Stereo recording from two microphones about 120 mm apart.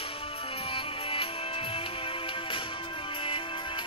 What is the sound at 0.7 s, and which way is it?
Music, 45° left (ahead or behind).